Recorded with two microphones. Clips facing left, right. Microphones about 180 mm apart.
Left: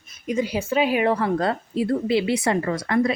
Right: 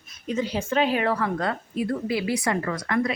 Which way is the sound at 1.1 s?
30° left (ahead or behind).